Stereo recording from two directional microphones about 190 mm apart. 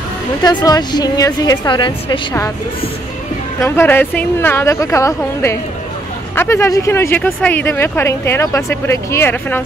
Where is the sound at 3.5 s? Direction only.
10° left (ahead or behind).